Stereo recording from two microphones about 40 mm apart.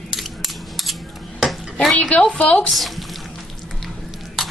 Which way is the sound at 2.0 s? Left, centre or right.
Left.